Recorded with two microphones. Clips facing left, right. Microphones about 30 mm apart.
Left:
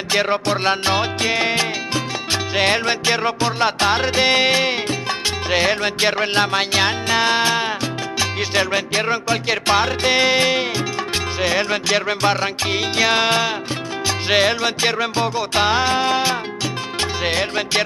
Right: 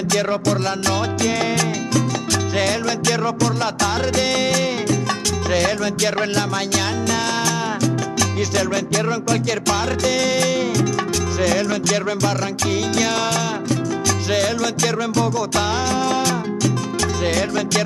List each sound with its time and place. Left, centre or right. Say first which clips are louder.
0.1 s music: left 2 dB; left